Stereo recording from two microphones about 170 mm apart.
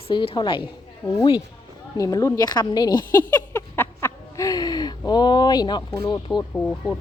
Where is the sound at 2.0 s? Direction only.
20° left (ahead or behind).